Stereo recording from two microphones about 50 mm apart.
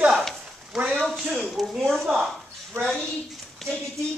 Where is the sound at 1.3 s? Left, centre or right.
Centre.